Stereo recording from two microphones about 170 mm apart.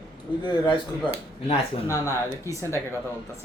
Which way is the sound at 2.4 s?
15° left (ahead or behind).